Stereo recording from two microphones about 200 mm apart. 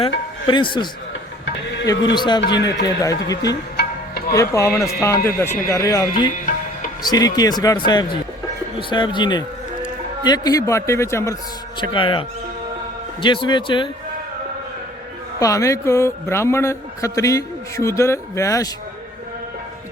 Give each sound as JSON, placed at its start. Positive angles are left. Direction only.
{"t": 0.0, "sound": "speech", "side_deg": 25}
{"t": 2.1, "sound": "a man's voice", "side_deg": 20}
{"t": 11.8, "sound": "speech", "side_deg": 25}
{"t": 13.2, "sound": "speech", "side_deg": 25}
{"t": 15.4, "sound": "a man's voice", "side_deg": 15}